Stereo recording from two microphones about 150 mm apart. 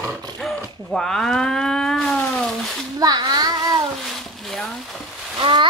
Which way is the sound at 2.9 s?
25° right (ahead or behind).